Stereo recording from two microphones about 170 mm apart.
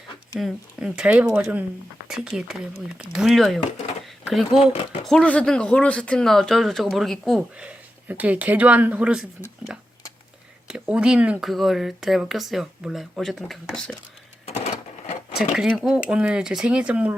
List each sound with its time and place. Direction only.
0.3 s speech: 5° right (ahead or behind)
14.4 s sewing machine: 40° left (ahead or behind)
15.4 s speech: centre (ahead or behind)